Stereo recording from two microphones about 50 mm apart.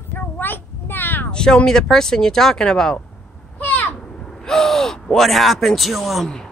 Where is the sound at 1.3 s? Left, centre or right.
Centre.